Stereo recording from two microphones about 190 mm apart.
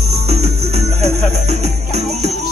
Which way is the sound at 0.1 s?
35° right (ahead or behind).